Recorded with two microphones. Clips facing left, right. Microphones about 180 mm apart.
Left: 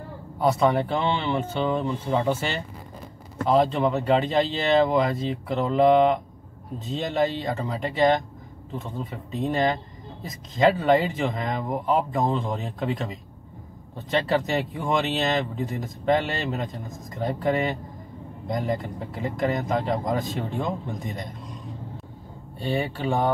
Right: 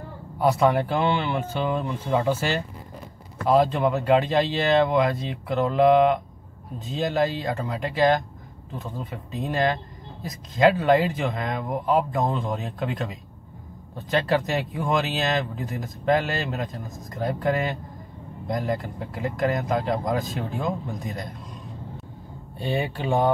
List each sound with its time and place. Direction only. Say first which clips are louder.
0.4 s speech: right 1 dB; 5° right (ahead or behind)
22.6 s speech: even; 15° right (ahead or behind)